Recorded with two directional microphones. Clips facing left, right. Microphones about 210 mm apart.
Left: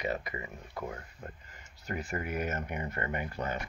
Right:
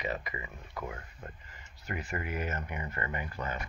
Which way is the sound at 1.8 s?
40° left (ahead or behind).